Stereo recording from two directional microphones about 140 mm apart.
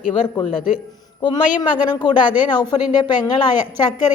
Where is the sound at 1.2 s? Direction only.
35° left (ahead or behind).